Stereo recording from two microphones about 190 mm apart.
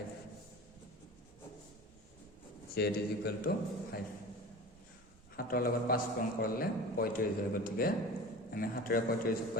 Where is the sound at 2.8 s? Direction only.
55° left (ahead or behind).